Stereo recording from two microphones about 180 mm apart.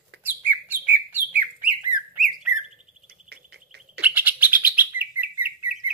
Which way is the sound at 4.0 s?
10° right (ahead or behind).